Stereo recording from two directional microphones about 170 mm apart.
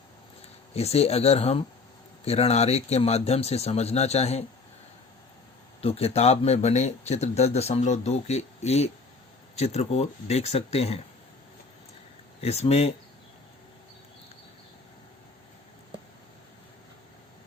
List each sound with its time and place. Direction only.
0.7 s speech: 40° left (ahead or behind)
5.8 s speech: 35° left (ahead or behind)
12.4 s speech: 40° left (ahead or behind)